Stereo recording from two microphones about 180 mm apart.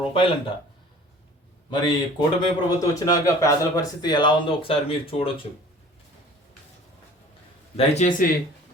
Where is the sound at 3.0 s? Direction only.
20° left (ahead or behind).